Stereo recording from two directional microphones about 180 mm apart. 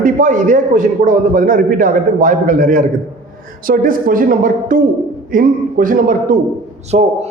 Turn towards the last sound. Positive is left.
turn(degrees=-35)  # may be behind; listen again after turning